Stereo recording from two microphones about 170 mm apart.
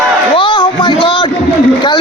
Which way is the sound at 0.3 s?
30° left (ahead or behind).